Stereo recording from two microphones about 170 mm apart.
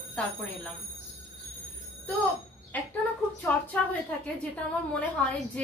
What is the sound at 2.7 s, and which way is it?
Speech, 10° left (ahead or behind).